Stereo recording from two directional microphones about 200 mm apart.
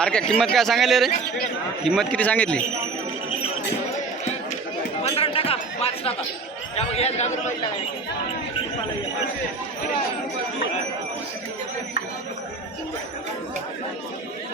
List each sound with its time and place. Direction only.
0.0 s a man's voice: 5° left (ahead or behind)
5.0 s chatter: 30° left (ahead or behind)
6.7 s a man's voice: 30° left (ahead or behind)